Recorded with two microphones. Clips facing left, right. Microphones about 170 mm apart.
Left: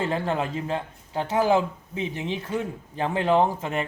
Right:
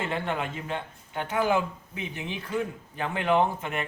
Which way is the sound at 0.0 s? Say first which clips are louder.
Left 4 dB; 35° left (ahead or behind).